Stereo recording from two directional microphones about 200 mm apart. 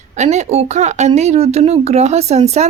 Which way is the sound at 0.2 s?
35° right (ahead or behind).